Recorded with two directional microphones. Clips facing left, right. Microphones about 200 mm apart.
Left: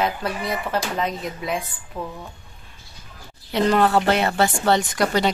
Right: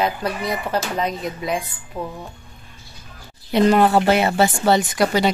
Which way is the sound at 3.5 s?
15° right (ahead or behind).